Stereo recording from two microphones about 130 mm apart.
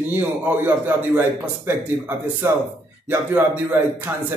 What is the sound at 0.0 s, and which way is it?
A man's voice, 15° right (ahead or behind).